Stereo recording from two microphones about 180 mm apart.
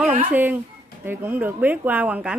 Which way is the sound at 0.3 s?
10° right (ahead or behind).